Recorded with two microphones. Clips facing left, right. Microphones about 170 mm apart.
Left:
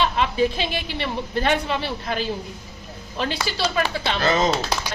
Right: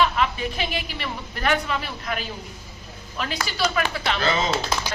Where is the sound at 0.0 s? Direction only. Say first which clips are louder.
Left 2 dB; 25° left (ahead or behind).